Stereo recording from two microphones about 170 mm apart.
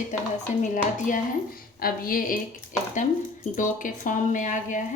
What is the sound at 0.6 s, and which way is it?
Speech, 50° left (ahead or behind).